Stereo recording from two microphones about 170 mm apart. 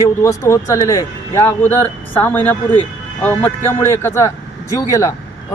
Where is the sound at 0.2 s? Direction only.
15° left (ahead or behind).